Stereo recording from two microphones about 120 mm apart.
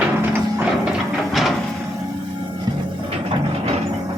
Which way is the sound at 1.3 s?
Centre (ahead or behind).